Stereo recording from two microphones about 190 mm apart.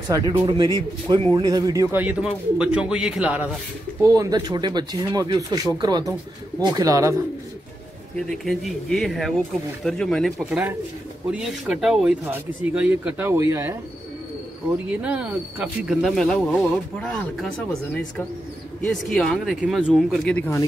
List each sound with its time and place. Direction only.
0.1 s speech: 20° right (ahead or behind)
4.0 s speech: 15° right (ahead or behind)
8.2 s speech: centre (ahead or behind)
14.9 s speech: 5° right (ahead or behind)
18.8 s speech: 5° left (ahead or behind)